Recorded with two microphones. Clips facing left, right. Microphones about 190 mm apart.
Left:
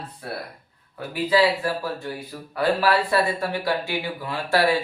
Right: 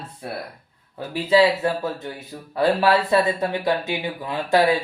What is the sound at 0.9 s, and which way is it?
Speech, 25° right (ahead or behind).